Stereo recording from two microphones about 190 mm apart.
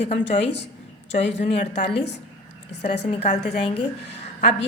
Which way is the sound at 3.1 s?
35° left (ahead or behind).